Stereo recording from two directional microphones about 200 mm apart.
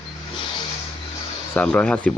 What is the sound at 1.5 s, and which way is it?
Speech, 5° left (ahead or behind).